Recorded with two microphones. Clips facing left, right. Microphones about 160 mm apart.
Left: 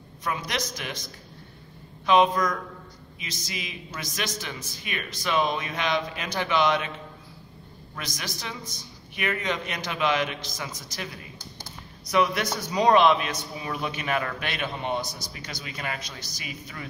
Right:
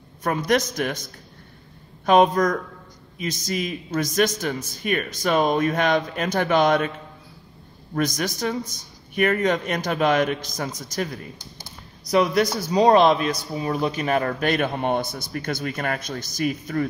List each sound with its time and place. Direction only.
0.2 s a man's voice: 50° right (ahead or behind)
7.9 s a man's voice: 45° right (ahead or behind)
12.1 s a man's voice: 35° right (ahead or behind)